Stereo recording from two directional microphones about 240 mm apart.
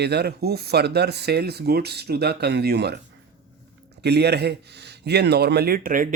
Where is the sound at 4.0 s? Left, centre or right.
Right.